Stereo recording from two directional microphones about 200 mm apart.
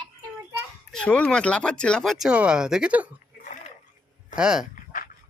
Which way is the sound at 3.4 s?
40° left (ahead or behind).